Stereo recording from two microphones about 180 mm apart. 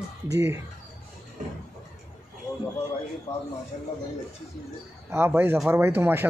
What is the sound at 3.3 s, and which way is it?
Speech, 35° left (ahead or behind).